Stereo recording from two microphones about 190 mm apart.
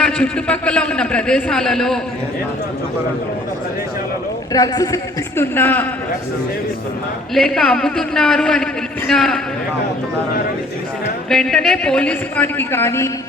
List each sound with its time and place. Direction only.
0.0 s a man's voice: 5° left (ahead or behind)
4.5 s a man's voice: 20° left (ahead or behind)
7.3 s a man's voice: 5° left (ahead or behind)
11.3 s a man's voice: 5° left (ahead or behind)